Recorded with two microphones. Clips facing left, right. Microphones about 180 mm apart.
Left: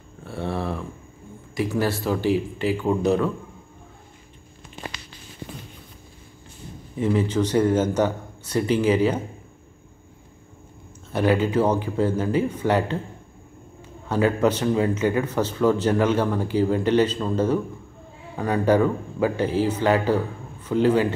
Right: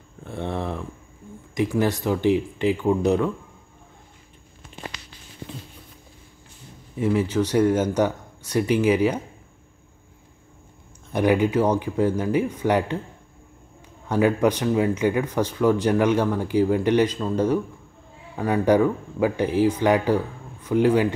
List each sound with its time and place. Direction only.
0.2 s a sound: 20° right (ahead or behind)
1.5 s speech: 20° right (ahead or behind)
7.0 s speech: 10° right (ahead or behind)
11.1 s speech: 15° right (ahead or behind)
14.0 s speech: 15° right (ahead or behind)